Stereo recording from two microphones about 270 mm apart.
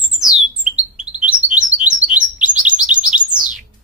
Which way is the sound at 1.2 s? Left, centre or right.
Right.